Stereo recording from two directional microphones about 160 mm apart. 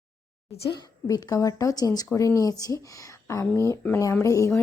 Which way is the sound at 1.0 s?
20° left (ahead or behind).